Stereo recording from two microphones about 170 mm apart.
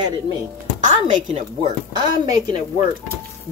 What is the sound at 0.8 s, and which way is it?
Speech, 45° right (ahead or behind).